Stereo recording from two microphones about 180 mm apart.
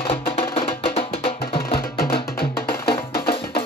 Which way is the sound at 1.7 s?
60° left (ahead or behind).